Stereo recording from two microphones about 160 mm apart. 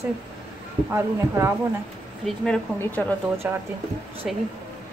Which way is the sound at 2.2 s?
Centre (ahead or behind).